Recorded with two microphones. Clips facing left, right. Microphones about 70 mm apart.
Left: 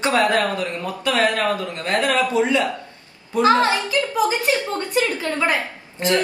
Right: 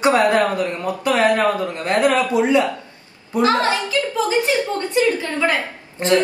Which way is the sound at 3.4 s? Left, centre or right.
Left.